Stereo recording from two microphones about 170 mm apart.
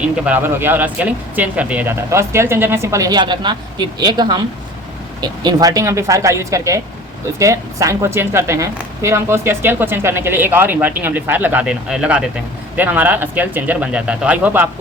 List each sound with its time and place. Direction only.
0.0 s speech: 10° right (ahead or behind)